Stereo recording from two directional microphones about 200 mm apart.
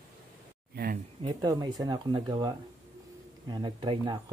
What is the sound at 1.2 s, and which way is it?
Speech, 20° right (ahead or behind).